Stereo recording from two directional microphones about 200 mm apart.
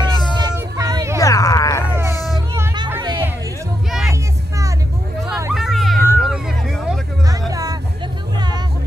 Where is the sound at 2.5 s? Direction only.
15° right (ahead or behind).